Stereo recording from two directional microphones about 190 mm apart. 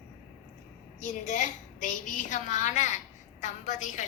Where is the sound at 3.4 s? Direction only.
40° left (ahead or behind).